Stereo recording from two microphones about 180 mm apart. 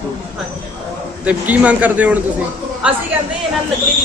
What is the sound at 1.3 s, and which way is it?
A man's voice, 10° right (ahead or behind).